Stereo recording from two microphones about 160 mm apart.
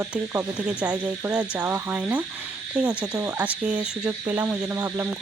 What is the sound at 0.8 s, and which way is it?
Speech, 10° right (ahead or behind).